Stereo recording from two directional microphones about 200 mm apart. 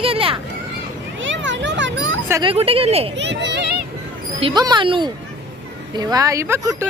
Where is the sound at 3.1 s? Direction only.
60° right (ahead or behind).